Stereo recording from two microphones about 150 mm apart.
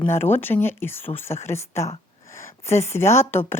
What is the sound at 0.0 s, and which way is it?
A woman's voice, 15° left (ahead or behind).